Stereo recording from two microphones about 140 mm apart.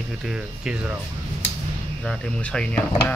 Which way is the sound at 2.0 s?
5° left (ahead or behind).